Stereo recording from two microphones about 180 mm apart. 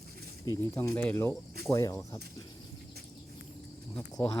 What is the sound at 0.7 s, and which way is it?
Speech, 10° left (ahead or behind).